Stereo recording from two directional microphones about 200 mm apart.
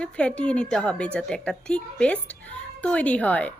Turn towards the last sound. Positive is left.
turn(degrees=5)  # may be behind; listen again after turning